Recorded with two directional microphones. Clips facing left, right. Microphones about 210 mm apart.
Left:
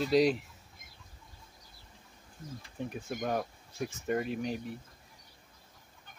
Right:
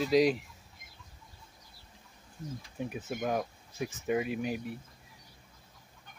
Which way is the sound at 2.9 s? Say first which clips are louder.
Right 1 dB; 5° right (ahead or behind).